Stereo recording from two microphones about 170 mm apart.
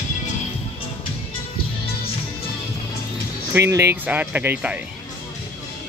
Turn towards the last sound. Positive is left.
turn(degrees=-10)  # may be behind; listen again after turning